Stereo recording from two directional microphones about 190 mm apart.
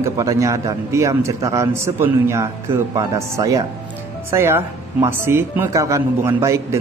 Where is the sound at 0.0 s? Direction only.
15° right (ahead or behind).